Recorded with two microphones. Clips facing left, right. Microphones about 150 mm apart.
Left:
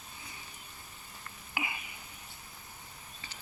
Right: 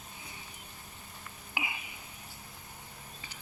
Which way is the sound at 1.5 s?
10° right (ahead or behind).